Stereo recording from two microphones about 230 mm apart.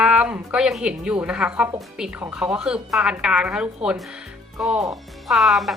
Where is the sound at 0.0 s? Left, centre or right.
Centre.